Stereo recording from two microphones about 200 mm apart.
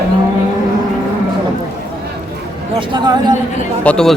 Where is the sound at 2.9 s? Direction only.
20° right (ahead or behind).